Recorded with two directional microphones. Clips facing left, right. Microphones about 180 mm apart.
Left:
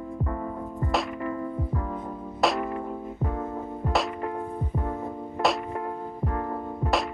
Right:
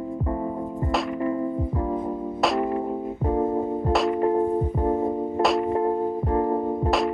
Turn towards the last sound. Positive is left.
turn(degrees=-25)  # may be behind; listen again after turning